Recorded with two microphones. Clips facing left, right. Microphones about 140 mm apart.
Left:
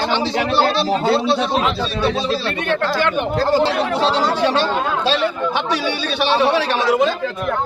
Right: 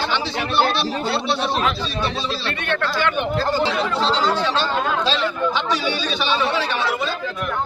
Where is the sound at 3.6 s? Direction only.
65° left (ahead or behind).